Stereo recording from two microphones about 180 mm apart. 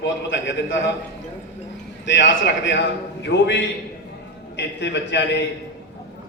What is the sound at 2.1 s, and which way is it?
A man's voice, 80° left.